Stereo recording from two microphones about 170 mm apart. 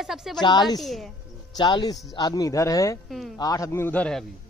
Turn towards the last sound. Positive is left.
turn(degrees=5)  # may be behind; listen again after turning